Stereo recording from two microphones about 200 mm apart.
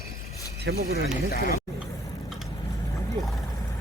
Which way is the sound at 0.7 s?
65° right (ahead or behind).